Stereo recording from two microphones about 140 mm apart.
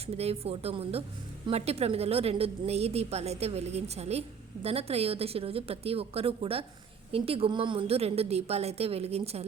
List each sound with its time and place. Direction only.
0.0 s a woman's voice: 45° right (ahead or behind)